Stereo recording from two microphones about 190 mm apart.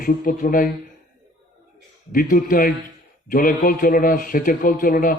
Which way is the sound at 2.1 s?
45° left (ahead or behind).